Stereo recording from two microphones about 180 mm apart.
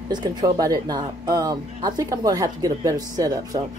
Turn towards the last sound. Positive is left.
turn(degrees=-20)  # may be behind; listen again after turning